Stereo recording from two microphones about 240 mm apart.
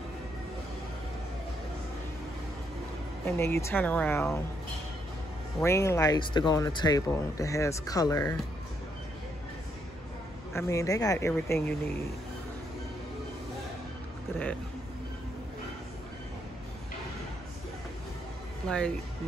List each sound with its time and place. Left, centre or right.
3.3 s speech: centre
5.6 s speech: centre
10.5 s speech: centre
18.7 s speech: centre